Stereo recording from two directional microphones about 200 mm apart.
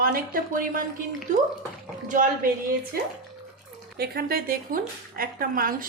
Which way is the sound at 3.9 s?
50° right (ahead or behind).